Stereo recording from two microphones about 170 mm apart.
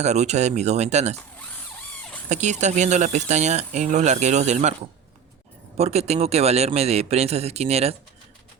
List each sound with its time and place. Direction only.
0.0 s a man's voice: 40° right (ahead or behind)
2.3 s speech: 45° right (ahead or behind)
5.7 s a man's voice: 40° right (ahead or behind)